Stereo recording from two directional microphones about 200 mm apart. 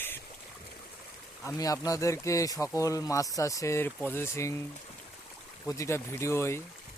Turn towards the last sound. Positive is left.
turn(degrees=15)  # may be behind; listen again after turning